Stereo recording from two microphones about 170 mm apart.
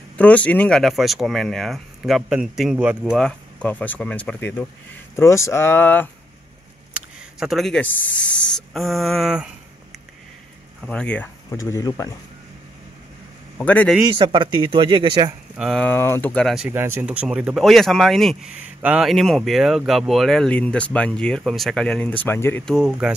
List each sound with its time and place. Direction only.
0.2 s speech: 10° left (ahead or behind); by 3.2 s 10° right (ahead or behind)
3.2 s speech: 5° left (ahead or behind)
6.9 s speech: centre (ahead or behind)
10.8 s speech: 5° left (ahead or behind)
11.5 s speech: 20° left (ahead or behind)
13.6 s speech: 5° left (ahead or behind)
14.0 s speech: 30° right (ahead or behind)
15.5 s speech: 5° right (ahead or behind)
15.8 s speech: 15° left (ahead or behind)
16.6 s speech: 15° right (ahead or behind); by 22.8 s 10° left (ahead or behind)
22.8 s speech: 5° right (ahead or behind)